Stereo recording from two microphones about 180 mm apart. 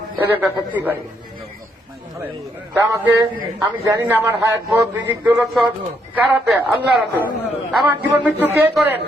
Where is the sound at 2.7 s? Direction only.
15° right (ahead or behind).